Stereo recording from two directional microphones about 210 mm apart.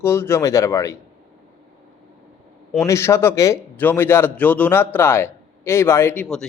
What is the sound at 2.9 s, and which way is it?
A man's voice, 10° left (ahead or behind).